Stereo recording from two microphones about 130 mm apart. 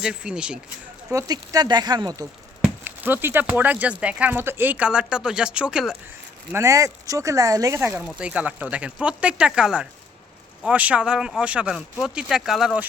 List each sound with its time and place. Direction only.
0.0 s speech: 5° right (ahead or behind)
1.1 s speech: 30° right (ahead or behind)
2.8 s speech: 15° right (ahead or behind)
6.5 s speech: 20° right (ahead or behind)
7.8 s speech: 15° right (ahead or behind)